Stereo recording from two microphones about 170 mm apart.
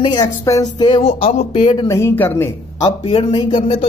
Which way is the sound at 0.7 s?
30° left (ahead or behind).